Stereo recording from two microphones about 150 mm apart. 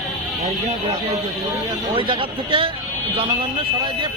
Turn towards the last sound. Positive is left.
turn(degrees=-35)  # may be behind; listen again after turning